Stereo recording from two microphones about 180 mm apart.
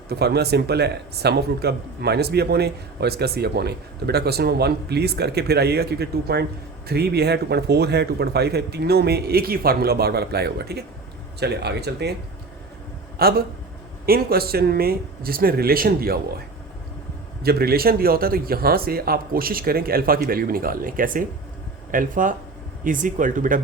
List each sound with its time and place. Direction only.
0.1 s speech: 65° right (ahead or behind)
13.2 s speech: 60° right (ahead or behind)
17.4 s speech: 60° right (ahead or behind)